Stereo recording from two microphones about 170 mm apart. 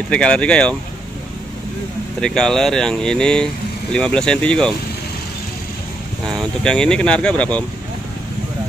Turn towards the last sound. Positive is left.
turn(degrees=5)  # may be behind; listen again after turning